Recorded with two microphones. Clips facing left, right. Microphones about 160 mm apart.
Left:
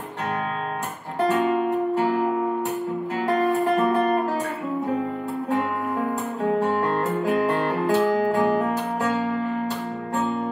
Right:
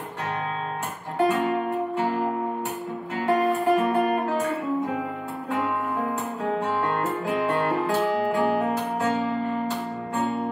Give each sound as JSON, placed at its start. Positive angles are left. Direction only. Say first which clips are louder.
{"t": 7.2, "sound": "music", "louder": "left 2 dB", "side_deg": 40}